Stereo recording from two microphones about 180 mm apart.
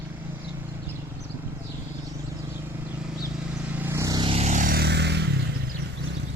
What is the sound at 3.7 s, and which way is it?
Vehicle, 15° right (ahead or behind).